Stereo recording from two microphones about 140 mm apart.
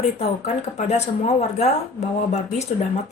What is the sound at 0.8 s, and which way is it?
Speech, 55° left (ahead or behind).